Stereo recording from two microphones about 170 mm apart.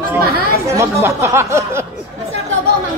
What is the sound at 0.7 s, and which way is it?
Speech, 15° right (ahead or behind).